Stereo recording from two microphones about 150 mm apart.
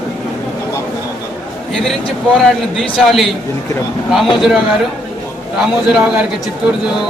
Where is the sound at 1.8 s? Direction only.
5° left (ahead or behind).